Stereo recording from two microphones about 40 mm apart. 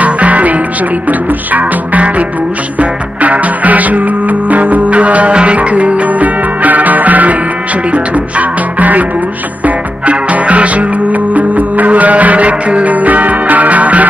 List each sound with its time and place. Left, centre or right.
0.0 s music: right
10.0 s music: right